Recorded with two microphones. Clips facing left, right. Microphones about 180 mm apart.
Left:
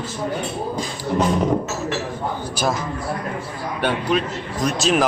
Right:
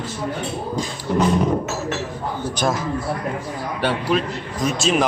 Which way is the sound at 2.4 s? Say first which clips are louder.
Right 2 dB; 5° left (ahead or behind).